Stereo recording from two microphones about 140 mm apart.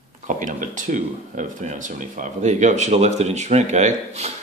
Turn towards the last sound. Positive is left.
turn(degrees=-50)  # may be behind; listen again after turning